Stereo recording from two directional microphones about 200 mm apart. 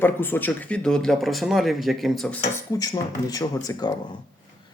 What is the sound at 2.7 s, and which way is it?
Speech, 20° left (ahead or behind).